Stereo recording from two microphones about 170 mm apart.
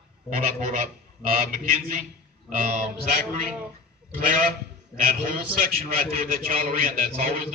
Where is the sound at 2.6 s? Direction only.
50° right (ahead or behind).